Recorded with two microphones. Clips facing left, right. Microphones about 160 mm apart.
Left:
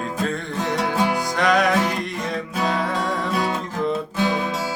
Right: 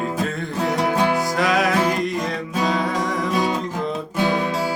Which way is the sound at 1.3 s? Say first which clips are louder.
Left 1 dB; centre (ahead or behind).